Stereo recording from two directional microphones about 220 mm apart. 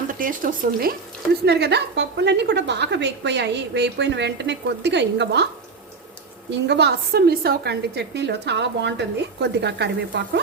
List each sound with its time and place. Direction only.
0.1 s a woman's voice: 40° right (ahead or behind)
6.5 s a woman's voice: 50° right (ahead or behind)